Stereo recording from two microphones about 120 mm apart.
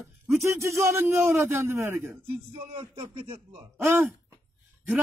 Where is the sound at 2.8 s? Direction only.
50° right (ahead or behind).